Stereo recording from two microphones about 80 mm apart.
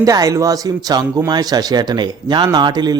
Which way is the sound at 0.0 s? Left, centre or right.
Right.